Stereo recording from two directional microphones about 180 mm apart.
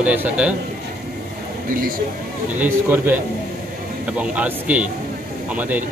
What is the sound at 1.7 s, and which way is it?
Speech, 50° right (ahead or behind).